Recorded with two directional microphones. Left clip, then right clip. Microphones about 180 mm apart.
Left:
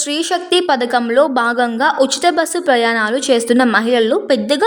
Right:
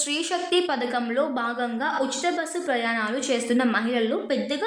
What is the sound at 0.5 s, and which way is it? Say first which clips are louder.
A woman's voice: left 11 dB; 50° left (ahead or behind).